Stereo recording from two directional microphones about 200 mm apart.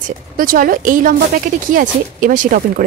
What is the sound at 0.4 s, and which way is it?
Speech, 45° right (ahead or behind).